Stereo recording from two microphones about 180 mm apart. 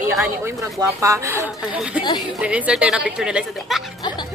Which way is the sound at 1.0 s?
15° right (ahead or behind).